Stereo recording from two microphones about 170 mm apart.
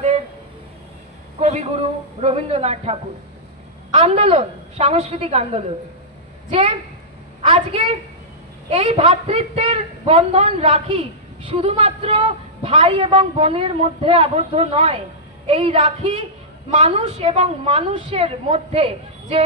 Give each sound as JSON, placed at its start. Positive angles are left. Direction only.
{"t": 1.4, "sound": "a woman's voice", "side_deg": -40}
{"t": 7.4, "sound": "a woman's voice", "side_deg": -35}